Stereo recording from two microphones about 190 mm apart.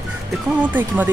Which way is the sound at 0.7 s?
10° right (ahead or behind).